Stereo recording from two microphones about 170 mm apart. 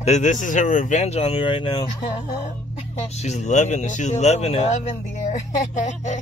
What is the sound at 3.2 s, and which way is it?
Speech, 40° left (ahead or behind).